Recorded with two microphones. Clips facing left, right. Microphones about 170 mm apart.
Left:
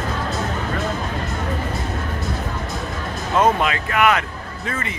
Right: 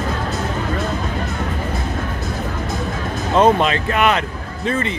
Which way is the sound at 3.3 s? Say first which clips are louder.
Right 4 dB; 30° right (ahead or behind).